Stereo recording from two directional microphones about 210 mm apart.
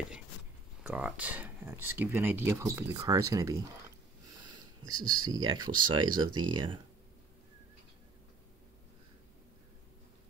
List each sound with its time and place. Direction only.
0.8 s speech: 5° right (ahead or behind)
4.6 s a sound: 20° right (ahead or behind)
5.2 s speech: 20° right (ahead or behind)